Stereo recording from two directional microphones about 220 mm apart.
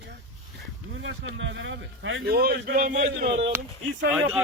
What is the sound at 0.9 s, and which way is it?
Speech, 55° right (ahead or behind).